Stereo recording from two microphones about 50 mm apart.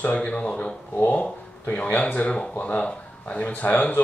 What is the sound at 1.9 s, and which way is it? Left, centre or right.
Speech, left.